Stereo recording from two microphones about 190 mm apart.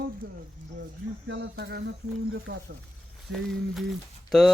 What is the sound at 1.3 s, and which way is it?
Cricket, 60° right (ahead or behind).